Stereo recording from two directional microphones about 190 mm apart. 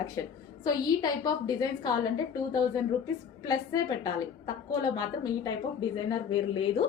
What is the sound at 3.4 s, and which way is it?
A woman's voice, 20° left (ahead or behind).